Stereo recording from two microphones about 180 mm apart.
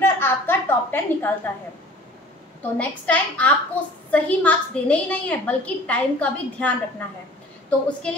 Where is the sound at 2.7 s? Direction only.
10° left (ahead or behind).